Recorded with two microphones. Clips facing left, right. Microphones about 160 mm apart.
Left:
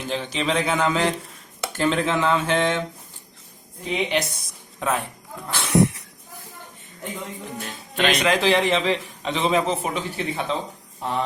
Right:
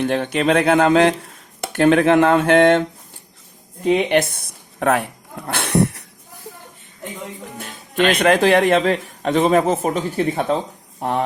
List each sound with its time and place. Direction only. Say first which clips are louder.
0.0 s speech: right 8 dB; 60° right (ahead or behind)
3.8 s speech: right 8 dB; 55° right (ahead or behind)
5.5 s a sound: right 1 dB; 60° right (ahead or behind)
8.1 s a man's voice: right 5 dB; 55° right (ahead or behind)
11.0 s speech: right 6 dB; 55° right (ahead or behind)